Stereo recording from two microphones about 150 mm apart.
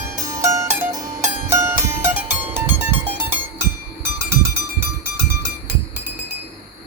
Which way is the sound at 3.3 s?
15° right (ahead or behind).